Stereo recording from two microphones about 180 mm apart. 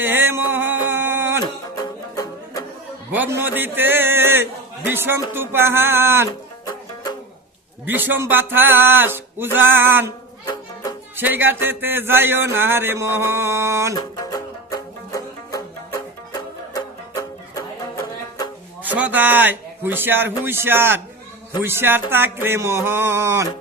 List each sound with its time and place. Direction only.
0.0 s music: 10° right (ahead or behind)
1.7 s music: 20° left (ahead or behind)
3.1 s music: 10° right (ahead or behind)
7.9 s music: 10° right (ahead or behind)
10.4 s music: 25° left (ahead or behind)
11.2 s music: 10° right (ahead or behind)
14.2 s music: 20° left (ahead or behind)
18.8 s music: 10° right (ahead or behind)